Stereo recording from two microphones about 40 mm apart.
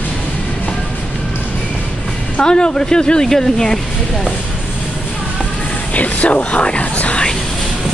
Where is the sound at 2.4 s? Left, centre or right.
Left.